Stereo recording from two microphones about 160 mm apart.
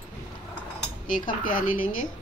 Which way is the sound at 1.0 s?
55° left (ahead or behind).